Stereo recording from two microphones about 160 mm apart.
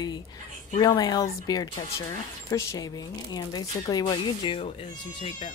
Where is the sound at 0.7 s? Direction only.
25° left (ahead or behind).